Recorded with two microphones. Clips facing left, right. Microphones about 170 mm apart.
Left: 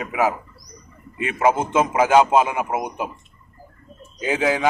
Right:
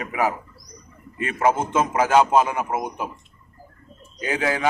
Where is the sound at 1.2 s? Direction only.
10° left (ahead or behind).